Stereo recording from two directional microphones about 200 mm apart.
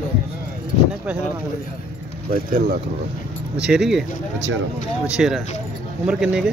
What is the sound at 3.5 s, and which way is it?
Speech, 5° right (ahead or behind).